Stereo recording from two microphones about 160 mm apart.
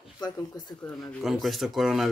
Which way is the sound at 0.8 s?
5° left (ahead or behind).